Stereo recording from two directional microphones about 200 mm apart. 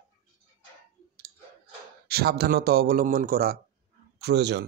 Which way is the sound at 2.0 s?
50° right (ahead or behind).